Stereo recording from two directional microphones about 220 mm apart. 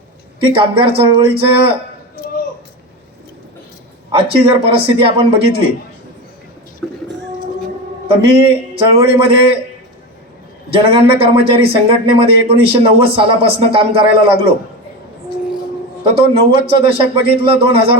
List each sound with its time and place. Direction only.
0.3 s speech: 25° right (ahead or behind)
4.1 s speech: 25° right (ahead or behind)
6.8 s a sound: 5° left (ahead or behind)
8.0 s a man's voice: 25° right (ahead or behind)
10.7 s speech: 25° right (ahead or behind)
16.0 s speech: 25° right (ahead or behind)